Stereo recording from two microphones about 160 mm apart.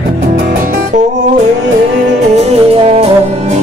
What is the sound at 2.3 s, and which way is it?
Music, 40° right (ahead or behind).